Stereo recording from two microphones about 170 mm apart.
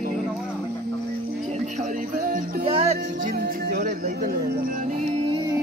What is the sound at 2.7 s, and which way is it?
Music, 35° right (ahead or behind).